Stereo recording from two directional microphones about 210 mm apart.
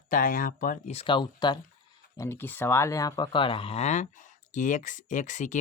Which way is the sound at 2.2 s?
10° left (ahead or behind).